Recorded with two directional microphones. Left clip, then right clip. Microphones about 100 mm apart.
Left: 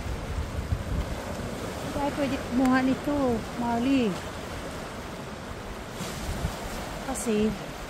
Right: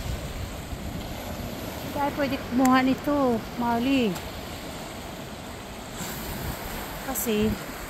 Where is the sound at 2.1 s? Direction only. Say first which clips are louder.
Right 2 dB; centre (ahead or behind).